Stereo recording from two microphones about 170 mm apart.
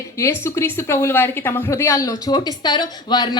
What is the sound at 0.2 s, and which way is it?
A woman's voice, 15° left (ahead or behind).